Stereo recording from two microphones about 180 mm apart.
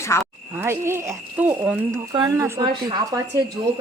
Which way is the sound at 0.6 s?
15° right (ahead or behind).